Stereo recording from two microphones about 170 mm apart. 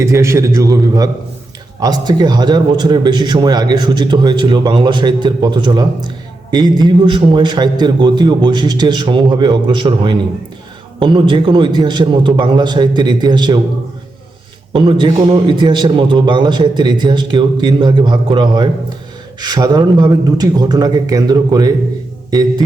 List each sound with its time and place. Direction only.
0.0 s a man's voice: 15° right (ahead or behind)
14.7 s a man's voice: 30° right (ahead or behind)